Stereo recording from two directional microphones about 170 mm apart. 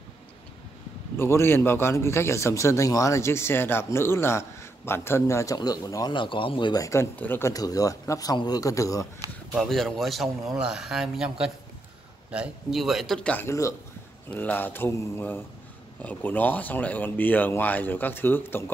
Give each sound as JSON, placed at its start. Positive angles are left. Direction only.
{"t": 1.1, "sound": "a man's voice", "side_deg": 15}
{"t": 9.5, "sound": "a man's voice", "side_deg": 0}